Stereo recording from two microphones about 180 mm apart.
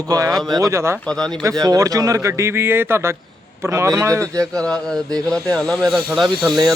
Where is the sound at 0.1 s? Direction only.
20° right (ahead or behind).